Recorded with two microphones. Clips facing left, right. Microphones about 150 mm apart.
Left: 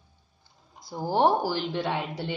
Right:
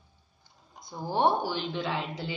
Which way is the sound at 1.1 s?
90° left.